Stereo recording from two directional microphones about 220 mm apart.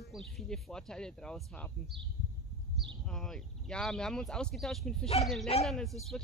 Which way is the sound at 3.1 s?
Centre (ahead or behind).